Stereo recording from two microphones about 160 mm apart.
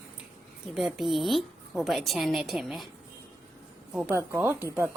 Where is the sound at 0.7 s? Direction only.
Centre (ahead or behind).